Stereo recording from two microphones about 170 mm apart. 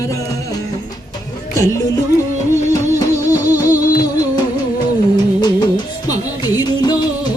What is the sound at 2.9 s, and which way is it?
Music, 15° right (ahead or behind).